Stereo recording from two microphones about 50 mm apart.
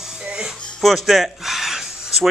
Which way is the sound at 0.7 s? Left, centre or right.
Centre.